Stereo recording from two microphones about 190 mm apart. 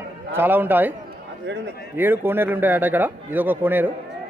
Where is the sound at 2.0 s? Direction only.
10° right (ahead or behind).